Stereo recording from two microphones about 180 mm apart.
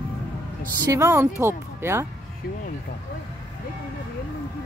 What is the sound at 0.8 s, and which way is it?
A woman's voice, 15° right (ahead or behind).